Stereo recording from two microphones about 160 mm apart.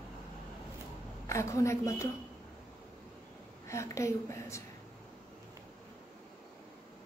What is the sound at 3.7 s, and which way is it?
Speech, 20° left (ahead or behind).